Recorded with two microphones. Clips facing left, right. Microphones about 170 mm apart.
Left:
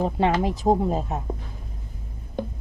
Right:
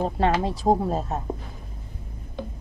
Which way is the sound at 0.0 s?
15° left (ahead or behind).